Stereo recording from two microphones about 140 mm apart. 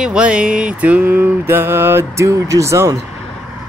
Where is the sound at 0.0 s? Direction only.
5° right (ahead or behind); by 3.0 s 20° right (ahead or behind).